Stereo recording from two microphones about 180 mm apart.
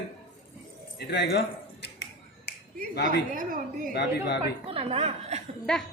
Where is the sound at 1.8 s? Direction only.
70° left (ahead or behind).